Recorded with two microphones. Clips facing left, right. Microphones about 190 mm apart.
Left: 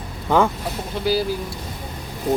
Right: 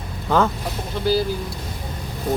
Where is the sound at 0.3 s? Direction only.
15° left (ahead or behind).